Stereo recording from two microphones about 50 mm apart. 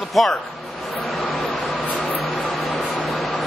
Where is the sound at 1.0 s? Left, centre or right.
Centre.